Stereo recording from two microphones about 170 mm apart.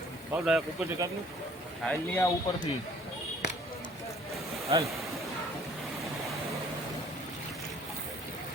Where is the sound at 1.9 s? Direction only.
10° left (ahead or behind).